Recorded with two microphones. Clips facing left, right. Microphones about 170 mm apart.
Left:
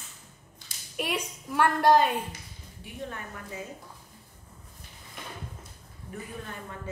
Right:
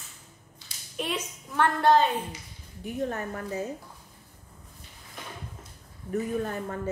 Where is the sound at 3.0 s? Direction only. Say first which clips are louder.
Right 8 dB; 40° right (ahead or behind).